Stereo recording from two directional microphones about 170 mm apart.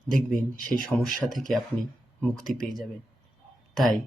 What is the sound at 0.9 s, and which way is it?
A man's voice, centre (ahead or behind).